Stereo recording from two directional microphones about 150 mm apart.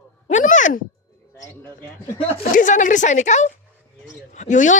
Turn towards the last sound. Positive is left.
turn(degrees=55)  # may be behind; listen again after turning